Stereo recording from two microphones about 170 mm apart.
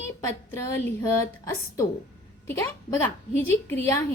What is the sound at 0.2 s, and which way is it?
Speech, 15° left (ahead or behind).